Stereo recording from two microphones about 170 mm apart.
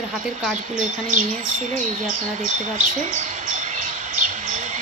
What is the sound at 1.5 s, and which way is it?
Bird, 45° right (ahead or behind).